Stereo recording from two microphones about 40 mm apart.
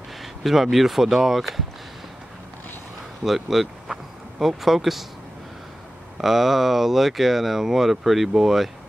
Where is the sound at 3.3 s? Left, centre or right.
Centre.